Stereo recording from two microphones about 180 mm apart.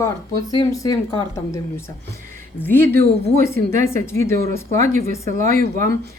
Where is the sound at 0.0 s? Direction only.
20° left (ahead or behind).